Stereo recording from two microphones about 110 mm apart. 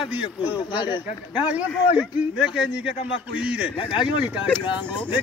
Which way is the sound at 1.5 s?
15° right (ahead or behind).